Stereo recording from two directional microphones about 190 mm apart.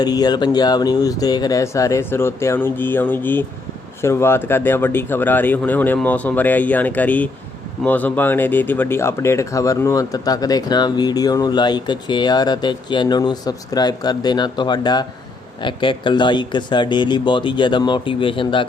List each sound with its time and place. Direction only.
0.0 s speech: 20° left (ahead or behind)